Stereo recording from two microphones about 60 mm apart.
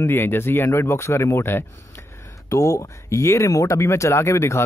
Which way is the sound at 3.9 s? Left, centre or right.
Left.